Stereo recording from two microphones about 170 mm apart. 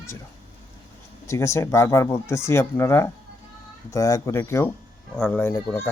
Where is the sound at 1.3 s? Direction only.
15° left (ahead or behind).